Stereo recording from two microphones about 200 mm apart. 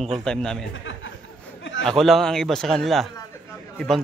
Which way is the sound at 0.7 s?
70° left (ahead or behind).